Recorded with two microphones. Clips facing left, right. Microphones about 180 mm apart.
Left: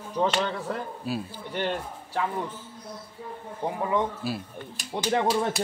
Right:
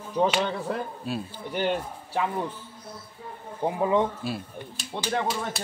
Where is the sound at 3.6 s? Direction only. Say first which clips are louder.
Right 3 dB; 20° right (ahead or behind).